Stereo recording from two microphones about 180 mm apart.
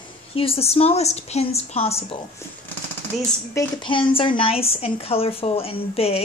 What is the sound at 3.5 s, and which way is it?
Speech, 25° left (ahead or behind).